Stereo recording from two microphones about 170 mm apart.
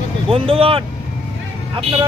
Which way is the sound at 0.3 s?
35° right (ahead or behind).